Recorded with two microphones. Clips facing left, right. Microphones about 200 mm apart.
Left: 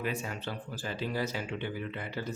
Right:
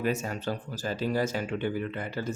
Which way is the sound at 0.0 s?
45° right (ahead or behind).